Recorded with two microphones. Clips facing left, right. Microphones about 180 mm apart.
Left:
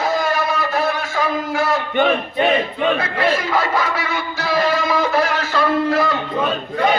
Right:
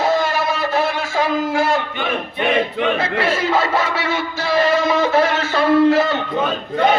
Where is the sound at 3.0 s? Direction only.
25° right (ahead or behind).